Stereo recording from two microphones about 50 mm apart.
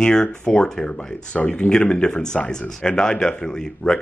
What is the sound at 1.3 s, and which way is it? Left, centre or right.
Speech, left.